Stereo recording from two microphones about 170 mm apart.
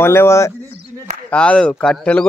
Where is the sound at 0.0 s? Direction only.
15° left (ahead or behind).